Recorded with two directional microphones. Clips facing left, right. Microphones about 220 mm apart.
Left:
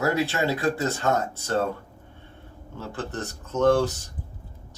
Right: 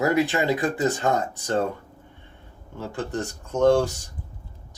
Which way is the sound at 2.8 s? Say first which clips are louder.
Right 3 dB; 15° right (ahead or behind).